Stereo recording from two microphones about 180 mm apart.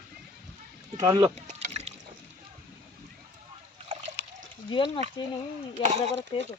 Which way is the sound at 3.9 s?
40° right (ahead or behind).